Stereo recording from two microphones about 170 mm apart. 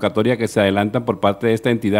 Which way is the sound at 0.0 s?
Centre (ahead or behind).